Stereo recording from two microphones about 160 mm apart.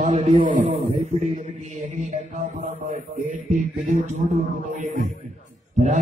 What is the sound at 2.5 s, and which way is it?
A man's voice, 55° right (ahead or behind).